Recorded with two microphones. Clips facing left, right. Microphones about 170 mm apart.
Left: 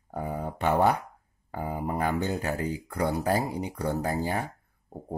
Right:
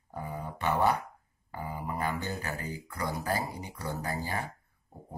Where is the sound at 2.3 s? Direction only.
60° left (ahead or behind).